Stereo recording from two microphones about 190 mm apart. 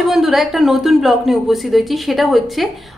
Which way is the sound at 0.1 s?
Centre (ahead or behind).